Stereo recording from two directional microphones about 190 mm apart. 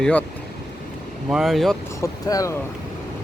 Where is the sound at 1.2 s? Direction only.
Centre (ahead or behind).